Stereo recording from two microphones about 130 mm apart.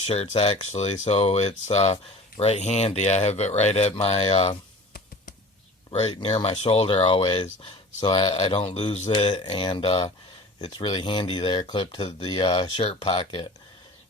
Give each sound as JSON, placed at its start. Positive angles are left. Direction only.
{"t": 0.0, "sound": "speech", "side_deg": 55}
{"t": 5.9, "sound": "speech", "side_deg": 50}